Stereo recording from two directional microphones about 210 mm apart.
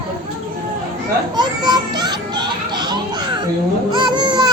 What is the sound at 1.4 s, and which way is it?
Children playing, 20° right (ahead or behind).